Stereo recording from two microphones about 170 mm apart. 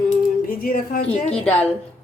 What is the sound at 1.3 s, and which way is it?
Speech, 5° left (ahead or behind).